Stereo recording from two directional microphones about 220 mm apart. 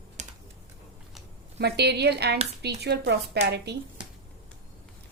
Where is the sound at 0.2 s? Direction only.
30° right (ahead or behind).